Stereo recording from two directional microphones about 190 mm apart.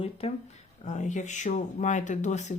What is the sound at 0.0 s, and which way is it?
Speech, 30° left (ahead or behind).